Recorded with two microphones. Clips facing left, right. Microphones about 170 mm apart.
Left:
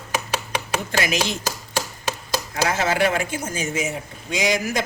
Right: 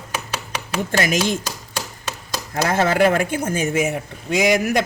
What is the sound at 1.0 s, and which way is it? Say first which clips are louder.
Speech: right 5 dB; 45° right (ahead or behind).